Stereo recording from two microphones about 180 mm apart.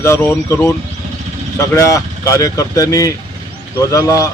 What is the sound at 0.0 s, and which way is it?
Speech, 15° left (ahead or behind).